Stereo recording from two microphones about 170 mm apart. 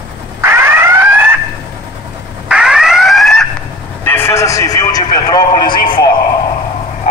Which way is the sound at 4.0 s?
10° left (ahead or behind).